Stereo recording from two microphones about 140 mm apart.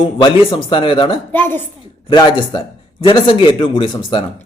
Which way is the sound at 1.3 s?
15° left (ahead or behind).